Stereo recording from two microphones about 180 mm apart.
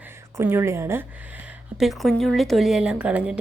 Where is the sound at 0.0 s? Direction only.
15° right (ahead or behind).